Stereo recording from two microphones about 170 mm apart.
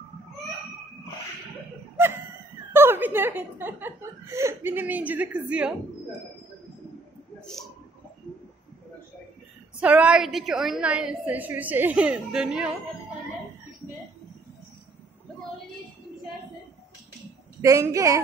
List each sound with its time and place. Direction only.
2.7 s speech: 15° right (ahead or behind)
9.8 s speech: 10° right (ahead or behind)
17.6 s a woman's voice: 20° right (ahead or behind)